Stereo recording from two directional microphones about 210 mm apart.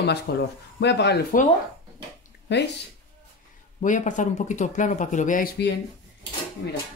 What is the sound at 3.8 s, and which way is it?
Speech, 35° left (ahead or behind).